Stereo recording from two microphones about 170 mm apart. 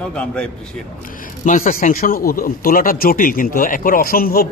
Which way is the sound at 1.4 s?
50° left (ahead or behind).